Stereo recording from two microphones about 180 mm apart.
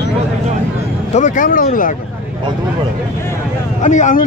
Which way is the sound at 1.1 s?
45° left (ahead or behind).